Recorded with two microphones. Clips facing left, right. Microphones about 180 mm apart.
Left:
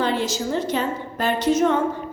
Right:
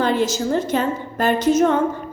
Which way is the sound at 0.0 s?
50° right (ahead or behind).